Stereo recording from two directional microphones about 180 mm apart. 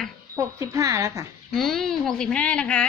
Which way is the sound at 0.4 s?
15° right (ahead or behind).